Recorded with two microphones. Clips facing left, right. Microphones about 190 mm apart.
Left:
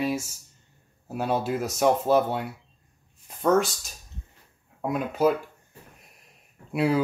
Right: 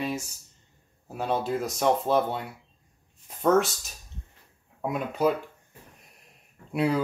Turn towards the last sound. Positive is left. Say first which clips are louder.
# left 2 dB
turn(degrees=5)  # may be behind; listen again after turning